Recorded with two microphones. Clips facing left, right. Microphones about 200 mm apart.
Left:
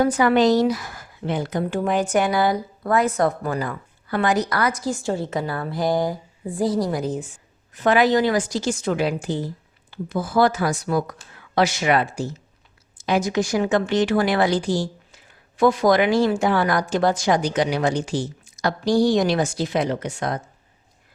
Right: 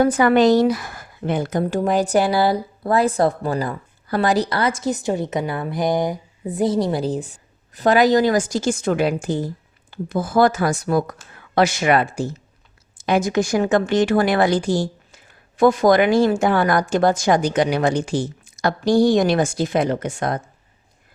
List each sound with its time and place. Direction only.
0.0 s a woman's voice: 50° right (ahead or behind)